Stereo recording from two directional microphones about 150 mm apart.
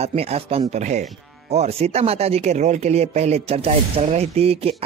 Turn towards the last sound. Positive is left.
turn(degrees=-40)  # may be behind; listen again after turning